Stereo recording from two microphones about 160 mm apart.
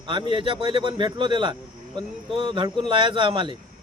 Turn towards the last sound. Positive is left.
turn(degrees=-30)  # may be behind; listen again after turning